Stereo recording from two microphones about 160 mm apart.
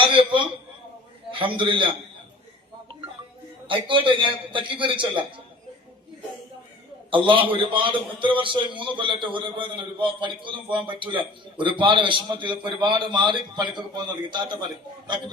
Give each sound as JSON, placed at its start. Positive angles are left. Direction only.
{"t": 0.0, "sound": "a sound", "side_deg": -30}
{"t": 1.3, "sound": "a man's voice", "side_deg": -30}
{"t": 3.7, "sound": "a man's voice", "side_deg": -30}
{"t": 7.1, "sound": "a man's voice", "side_deg": -30}